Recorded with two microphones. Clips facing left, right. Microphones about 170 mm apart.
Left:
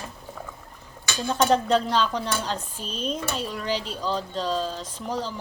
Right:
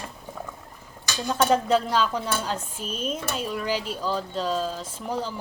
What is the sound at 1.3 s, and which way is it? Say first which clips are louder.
Speech: even; 5° right (ahead or behind).